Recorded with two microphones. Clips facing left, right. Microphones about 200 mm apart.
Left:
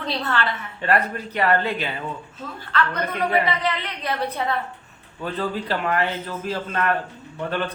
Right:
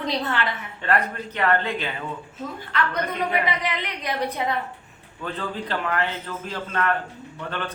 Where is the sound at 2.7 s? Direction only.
15° right (ahead or behind).